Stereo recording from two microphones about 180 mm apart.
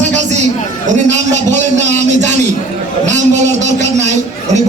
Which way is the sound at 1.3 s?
40° right (ahead or behind).